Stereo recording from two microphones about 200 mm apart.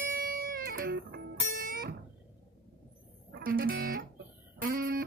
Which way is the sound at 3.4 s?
45° right (ahead or behind).